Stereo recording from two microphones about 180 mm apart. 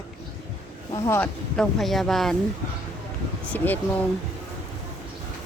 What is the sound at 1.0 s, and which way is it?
Speech, 10° left (ahead or behind).